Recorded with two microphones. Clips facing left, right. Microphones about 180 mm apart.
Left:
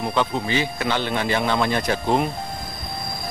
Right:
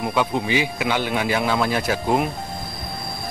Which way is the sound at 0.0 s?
10° right (ahead or behind).